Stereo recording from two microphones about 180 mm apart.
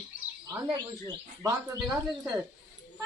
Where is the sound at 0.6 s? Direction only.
25° right (ahead or behind).